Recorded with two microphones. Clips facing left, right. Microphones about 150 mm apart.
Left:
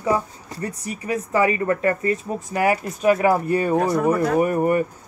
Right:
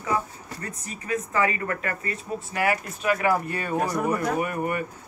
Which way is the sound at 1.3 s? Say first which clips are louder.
Left 7 dB; 25° left (ahead or behind).